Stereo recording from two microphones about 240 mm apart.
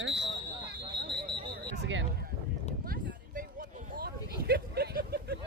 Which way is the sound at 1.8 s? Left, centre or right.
Right.